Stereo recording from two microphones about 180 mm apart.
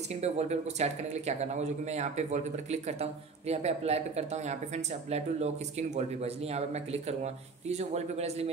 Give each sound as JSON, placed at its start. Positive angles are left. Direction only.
{"t": 0.1, "sound": "speech", "side_deg": -35}